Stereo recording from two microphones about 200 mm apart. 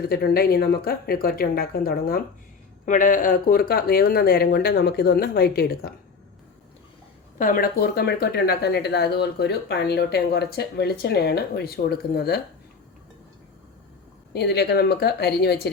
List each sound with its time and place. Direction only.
0.0 s speech: 50° left (ahead or behind)
7.3 s speech: 45° left (ahead or behind)
14.3 s a woman's voice: 55° left (ahead or behind)